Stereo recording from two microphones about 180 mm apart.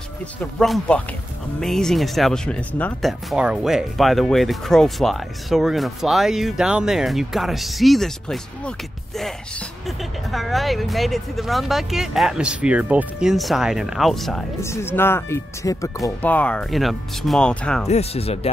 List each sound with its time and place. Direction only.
0.4 s speech: 5° left (ahead or behind)
9.8 s speech: centre (ahead or behind)
14.6 s speech: 15° left (ahead or behind)
17.8 s speech: 35° left (ahead or behind)